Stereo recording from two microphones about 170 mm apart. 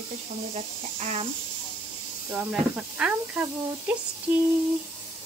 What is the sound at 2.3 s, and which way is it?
Speech, 5° right (ahead or behind).